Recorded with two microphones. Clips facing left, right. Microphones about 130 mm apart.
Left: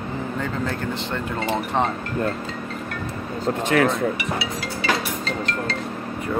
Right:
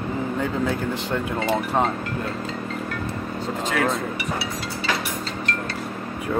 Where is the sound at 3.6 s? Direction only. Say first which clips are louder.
Left 4 dB; 65° left (ahead or behind).